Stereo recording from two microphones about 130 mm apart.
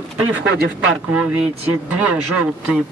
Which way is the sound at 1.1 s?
10° right (ahead or behind).